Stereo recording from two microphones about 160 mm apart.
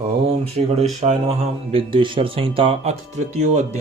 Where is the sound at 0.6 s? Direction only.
40° right (ahead or behind).